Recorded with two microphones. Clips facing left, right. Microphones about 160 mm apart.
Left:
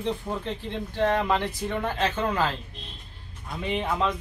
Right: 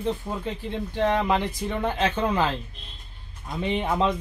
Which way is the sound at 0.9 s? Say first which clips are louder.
Right 1 dB; 15° right (ahead or behind).